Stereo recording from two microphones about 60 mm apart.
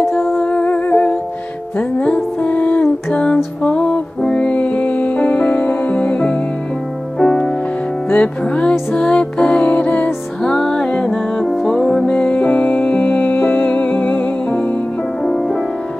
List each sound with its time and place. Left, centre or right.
0.4 s humming: centre
1.8 s music: left
7.2 s music: centre
8.1 s music: centre
10.4 s music: centre
12.1 s music: left
15.2 s music: centre